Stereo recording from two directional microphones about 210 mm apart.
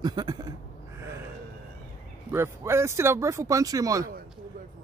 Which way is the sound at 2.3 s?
10° right (ahead or behind).